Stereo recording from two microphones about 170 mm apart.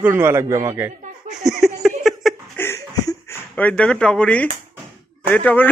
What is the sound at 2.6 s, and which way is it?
Chuckle, 15° left (ahead or behind).